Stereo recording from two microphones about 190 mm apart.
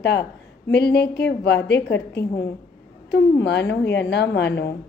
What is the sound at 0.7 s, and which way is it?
Speech, 60° left (ahead or behind).